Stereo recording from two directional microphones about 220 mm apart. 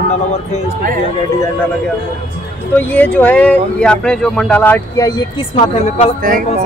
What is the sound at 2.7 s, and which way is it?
Speech, 10° left (ahead or behind).